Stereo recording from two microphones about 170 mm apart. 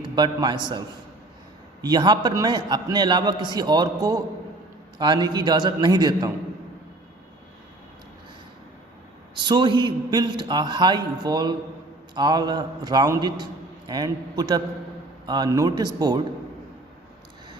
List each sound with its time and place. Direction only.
0.0 s a man's voice: 25° right (ahead or behind)
1.8 s a man's voice: 25° right (ahead or behind)
9.3 s a man's voice: 25° right (ahead or behind)